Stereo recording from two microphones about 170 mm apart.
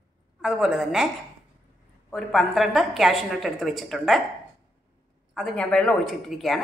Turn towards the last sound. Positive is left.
turn(degrees=0)  # may be behind; listen again after turning